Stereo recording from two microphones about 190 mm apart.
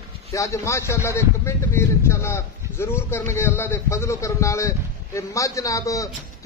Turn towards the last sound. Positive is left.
turn(degrees=15)  # may be behind; listen again after turning